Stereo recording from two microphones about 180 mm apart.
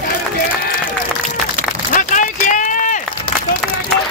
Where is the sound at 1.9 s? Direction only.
45° left (ahead or behind).